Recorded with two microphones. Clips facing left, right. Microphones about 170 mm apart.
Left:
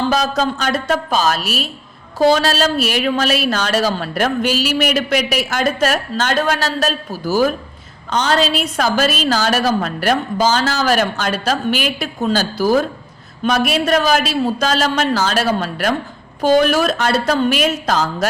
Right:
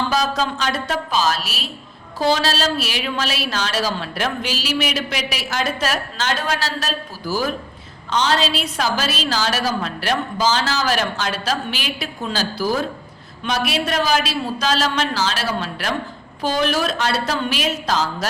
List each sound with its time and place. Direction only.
0.1 s a woman's voice: 45° left (ahead or behind)